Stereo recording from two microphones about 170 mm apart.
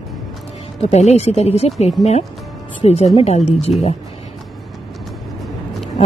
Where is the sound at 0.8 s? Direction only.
40° left (ahead or behind).